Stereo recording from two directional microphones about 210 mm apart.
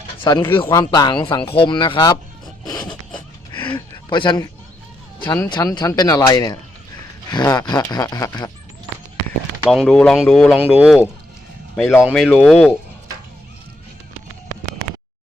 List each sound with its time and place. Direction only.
0.3 s speech: 20° left (ahead or behind)
2.9 s a sound: 20° left (ahead or behind)
5.2 s speech: 20° left (ahead or behind)
9.6 s speech: centre (ahead or behind)
12.0 s speech: centre (ahead or behind)